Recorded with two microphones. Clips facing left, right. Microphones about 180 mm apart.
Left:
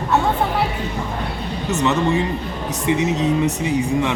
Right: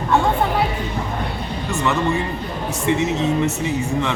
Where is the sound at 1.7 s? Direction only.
20° left (ahead or behind).